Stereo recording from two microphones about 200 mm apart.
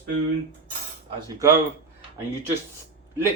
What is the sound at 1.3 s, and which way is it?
Speech, 15° right (ahead or behind).